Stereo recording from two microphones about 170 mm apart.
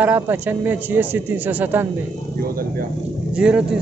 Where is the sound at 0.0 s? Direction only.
10° right (ahead or behind).